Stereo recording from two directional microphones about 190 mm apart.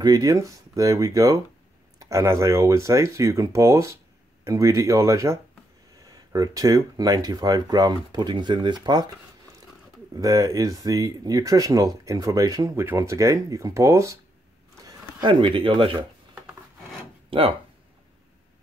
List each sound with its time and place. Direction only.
0.0 s speech: 20° right (ahead or behind)
10.1 s speech: 20° right (ahead or behind)